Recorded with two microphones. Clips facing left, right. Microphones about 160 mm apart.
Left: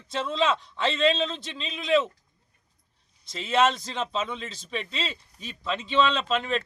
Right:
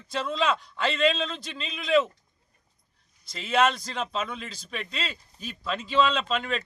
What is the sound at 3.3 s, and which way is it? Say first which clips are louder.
Speech: left 1 dB; centre (ahead or behind).